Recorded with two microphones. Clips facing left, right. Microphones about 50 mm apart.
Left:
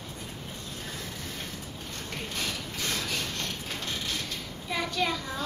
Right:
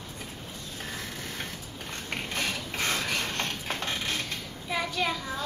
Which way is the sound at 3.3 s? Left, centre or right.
Right.